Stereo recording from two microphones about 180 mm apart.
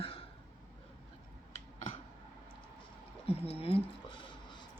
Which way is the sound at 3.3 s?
35° left (ahead or behind).